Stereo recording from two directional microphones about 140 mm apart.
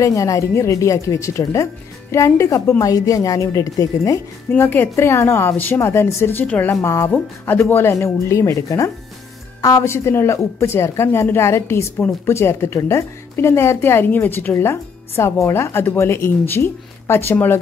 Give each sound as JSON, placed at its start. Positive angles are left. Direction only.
{"t": 0.0, "sound": "a woman's voice", "side_deg": 25}
{"t": 4.5, "sound": "a woman's voice", "side_deg": 15}